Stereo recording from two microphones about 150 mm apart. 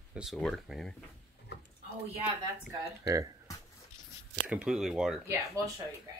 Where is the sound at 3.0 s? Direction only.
25° right (ahead or behind).